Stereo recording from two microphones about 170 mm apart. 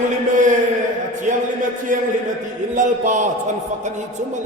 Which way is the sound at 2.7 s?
50° right (ahead or behind).